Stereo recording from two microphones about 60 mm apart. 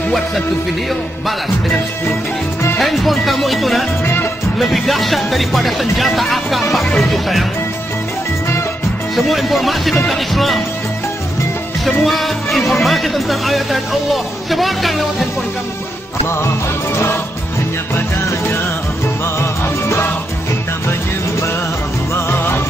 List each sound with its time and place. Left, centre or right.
2.8 s speech: centre
4.0 s music: left
4.6 s speech: centre
9.1 s speech: centre
11.8 s speech: centre
16.9 s music: left
22.1 s music: left